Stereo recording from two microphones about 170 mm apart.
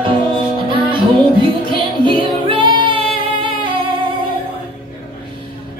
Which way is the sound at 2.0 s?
30° right (ahead or behind).